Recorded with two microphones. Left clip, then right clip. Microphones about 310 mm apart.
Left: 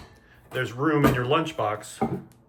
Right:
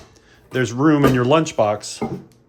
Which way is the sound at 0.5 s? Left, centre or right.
Centre.